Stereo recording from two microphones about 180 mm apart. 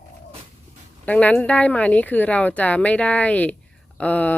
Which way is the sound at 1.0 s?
10° left (ahead or behind).